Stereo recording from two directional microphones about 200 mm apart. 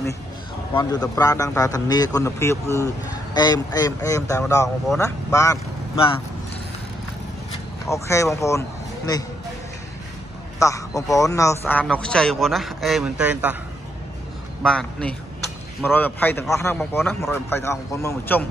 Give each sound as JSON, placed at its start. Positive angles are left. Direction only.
{"t": 0.7, "sound": "a man's voice", "side_deg": 20}
{"t": 7.9, "sound": "speech", "side_deg": 15}
{"t": 10.6, "sound": "a man's voice", "side_deg": 15}
{"t": 14.6, "sound": "a man's voice", "side_deg": 5}